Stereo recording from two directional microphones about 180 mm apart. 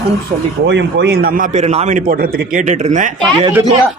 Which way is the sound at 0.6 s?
75° right (ahead or behind).